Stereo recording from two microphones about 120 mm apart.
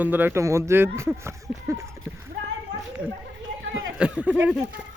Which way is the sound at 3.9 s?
10° right (ahead or behind).